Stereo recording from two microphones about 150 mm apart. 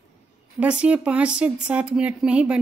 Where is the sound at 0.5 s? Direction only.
10° right (ahead or behind).